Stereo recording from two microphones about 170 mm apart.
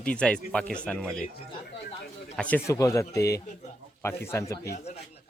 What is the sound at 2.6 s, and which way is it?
A man's voice, 20° left (ahead or behind).